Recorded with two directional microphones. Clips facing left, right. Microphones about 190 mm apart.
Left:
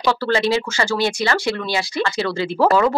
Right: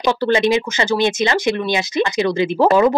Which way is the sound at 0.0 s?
20° right (ahead or behind).